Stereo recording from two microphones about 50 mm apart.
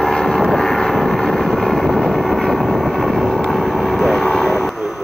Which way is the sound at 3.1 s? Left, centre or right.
Centre.